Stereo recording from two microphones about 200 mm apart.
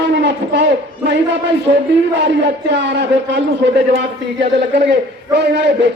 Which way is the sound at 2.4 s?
60° right (ahead or behind).